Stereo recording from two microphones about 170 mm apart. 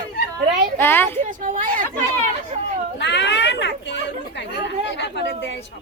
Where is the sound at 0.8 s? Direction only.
10° left (ahead or behind).